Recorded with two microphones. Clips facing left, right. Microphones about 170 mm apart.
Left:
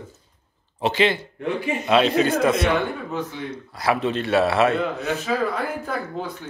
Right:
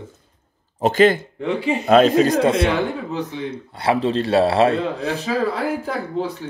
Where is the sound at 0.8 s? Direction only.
45° right (ahead or behind).